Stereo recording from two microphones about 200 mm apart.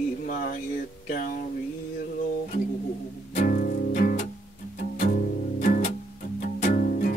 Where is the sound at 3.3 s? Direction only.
45° left (ahead or behind).